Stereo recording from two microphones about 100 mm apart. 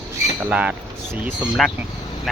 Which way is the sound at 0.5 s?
15° right (ahead or behind).